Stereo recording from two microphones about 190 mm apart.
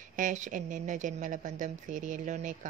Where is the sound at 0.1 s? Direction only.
40° right (ahead or behind).